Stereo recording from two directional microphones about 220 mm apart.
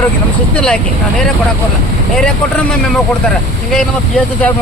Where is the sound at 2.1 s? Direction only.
Centre (ahead or behind).